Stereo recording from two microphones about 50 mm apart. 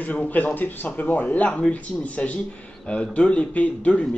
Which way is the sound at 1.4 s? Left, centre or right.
Left.